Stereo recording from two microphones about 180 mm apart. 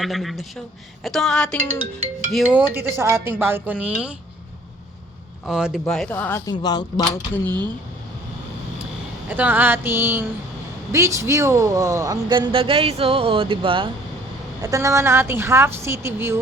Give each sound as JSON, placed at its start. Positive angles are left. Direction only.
{"t": 0.0, "sound": "a man's voice", "side_deg": 0}
{"t": 1.6, "sound": "speech", "side_deg": -90}
{"t": 2.3, "sound": "a woman's voice", "side_deg": -10}
{"t": 5.5, "sound": "a man's voice", "side_deg": -5}
{"t": 6.5, "sound": "speech", "side_deg": 25}
{"t": 7.3, "sound": "speech", "side_deg": 10}
{"t": 9.3, "sound": "a woman's voice", "side_deg": -10}
{"t": 14.6, "sound": "a woman's voice", "side_deg": -15}